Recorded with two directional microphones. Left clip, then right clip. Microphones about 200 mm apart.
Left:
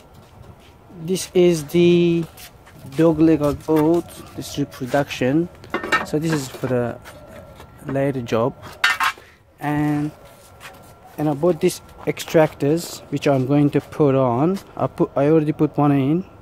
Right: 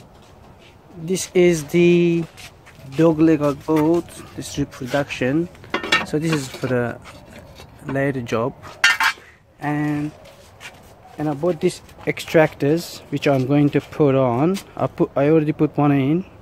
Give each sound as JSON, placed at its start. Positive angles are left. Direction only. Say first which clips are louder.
{"t": 1.0, "sound": "speech", "louder": "even", "side_deg": 0}
{"t": 9.6, "sound": "speech", "louder": "left 1 dB", "side_deg": 15}
{"t": 11.1, "sound": "speech", "louder": "left 2 dB", "side_deg": 15}
{"t": 12.0, "sound": "speech", "louder": "right 1 dB", "side_deg": 0}